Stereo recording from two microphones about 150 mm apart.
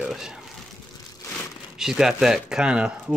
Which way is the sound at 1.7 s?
5° right (ahead or behind).